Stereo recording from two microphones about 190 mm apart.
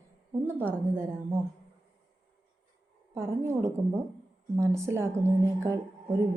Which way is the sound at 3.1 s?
15° right (ahead or behind).